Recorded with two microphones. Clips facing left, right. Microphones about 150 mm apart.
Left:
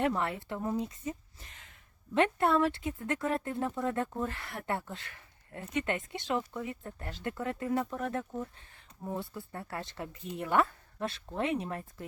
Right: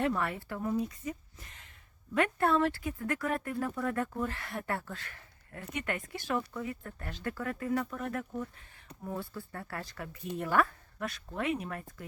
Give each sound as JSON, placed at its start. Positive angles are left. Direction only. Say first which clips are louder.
{"t": 0.0, "sound": "speech", "louder": "left 1 dB", "side_deg": 20}
{"t": 2.1, "sound": "speech", "louder": "left 1 dB", "side_deg": 25}
{"t": 8.9, "sound": "a sound", "louder": "even", "side_deg": -75}
{"t": 9.3, "sound": "speech", "louder": "left 1 dB", "side_deg": 25}